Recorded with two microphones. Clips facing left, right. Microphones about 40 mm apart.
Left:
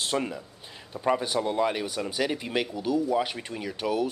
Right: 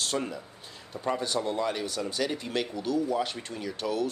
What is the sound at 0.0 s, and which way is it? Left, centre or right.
Speech, centre.